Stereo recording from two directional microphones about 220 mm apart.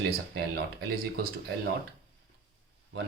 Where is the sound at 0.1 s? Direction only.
45° right (ahead or behind).